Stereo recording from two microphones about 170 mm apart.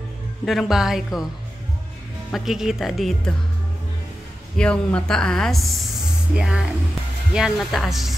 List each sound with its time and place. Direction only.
0.5 s speech: centre (ahead or behind)
2.3 s speech: 5° right (ahead or behind)
4.6 s speech: 5° left (ahead or behind)